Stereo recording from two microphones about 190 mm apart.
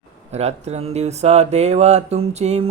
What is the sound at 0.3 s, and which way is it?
Speech, 35° right (ahead or behind).